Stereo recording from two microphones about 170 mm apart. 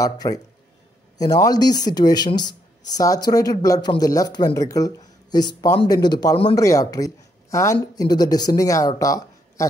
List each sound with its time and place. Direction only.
0.0 s speech: 20° left (ahead or behind)